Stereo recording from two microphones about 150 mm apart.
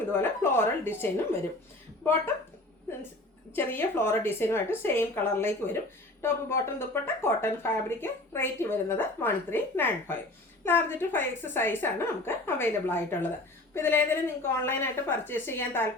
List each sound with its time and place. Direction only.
0.1 s speech: 15° left (ahead or behind)
3.5 s speech: 15° left (ahead or behind)